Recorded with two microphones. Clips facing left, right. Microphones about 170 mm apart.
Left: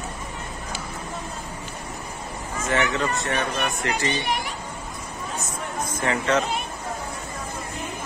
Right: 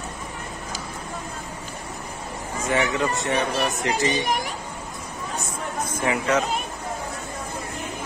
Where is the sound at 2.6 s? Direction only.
15° right (ahead or behind).